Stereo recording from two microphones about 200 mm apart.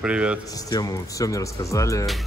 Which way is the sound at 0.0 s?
5° right (ahead or behind).